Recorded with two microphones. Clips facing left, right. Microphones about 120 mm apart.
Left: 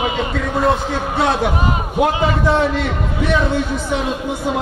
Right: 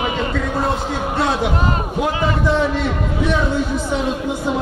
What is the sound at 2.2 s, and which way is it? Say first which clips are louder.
A man's voice: left 2 dB; 65° left (ahead or behind).